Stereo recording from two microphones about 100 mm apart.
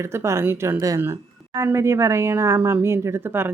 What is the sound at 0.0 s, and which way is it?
Speech, 30° right (ahead or behind).